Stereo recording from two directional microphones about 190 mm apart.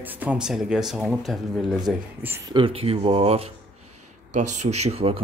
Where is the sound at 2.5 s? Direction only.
30° right (ahead or behind).